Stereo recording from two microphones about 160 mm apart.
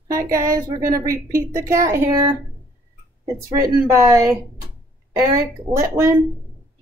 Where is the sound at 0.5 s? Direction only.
20° right (ahead or behind).